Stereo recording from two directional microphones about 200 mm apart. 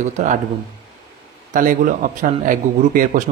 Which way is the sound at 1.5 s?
40° right (ahead or behind).